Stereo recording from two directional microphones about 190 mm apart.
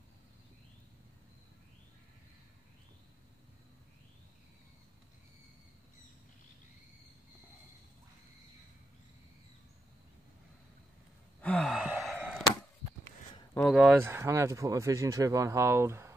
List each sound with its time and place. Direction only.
11.4 s sigh: 5° left (ahead or behind)
13.6 s speech: centre (ahead or behind)
13.9 s speech: 15° right (ahead or behind)